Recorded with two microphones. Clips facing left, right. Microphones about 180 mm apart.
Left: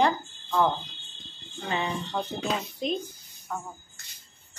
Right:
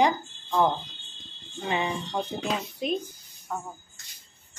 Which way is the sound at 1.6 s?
15° right (ahead or behind).